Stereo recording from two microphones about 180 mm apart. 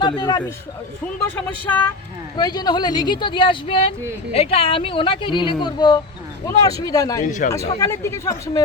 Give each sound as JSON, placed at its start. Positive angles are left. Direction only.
{"t": 0.0, "sound": "a man's voice", "side_deg": 20}
{"t": 1.4, "sound": "speech", "side_deg": 10}
{"t": 2.3, "sound": "speech", "side_deg": 20}
{"t": 7.3, "sound": "speech", "side_deg": 45}
{"t": 7.5, "sound": "speech", "side_deg": 15}